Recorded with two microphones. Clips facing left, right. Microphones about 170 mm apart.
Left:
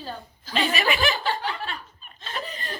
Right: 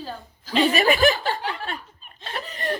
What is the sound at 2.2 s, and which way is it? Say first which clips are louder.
Snicker: right 2 dB; 65° right (ahead or behind).